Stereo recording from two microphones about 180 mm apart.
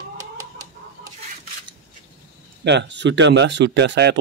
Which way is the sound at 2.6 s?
75° right (ahead or behind).